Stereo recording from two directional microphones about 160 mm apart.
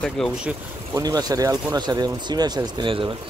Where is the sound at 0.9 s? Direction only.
25° right (ahead or behind).